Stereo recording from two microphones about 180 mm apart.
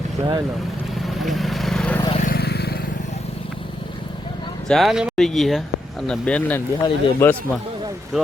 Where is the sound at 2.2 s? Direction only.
60° left (ahead or behind).